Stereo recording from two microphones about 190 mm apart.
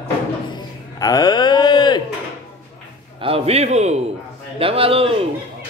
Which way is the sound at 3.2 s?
30° right (ahead or behind).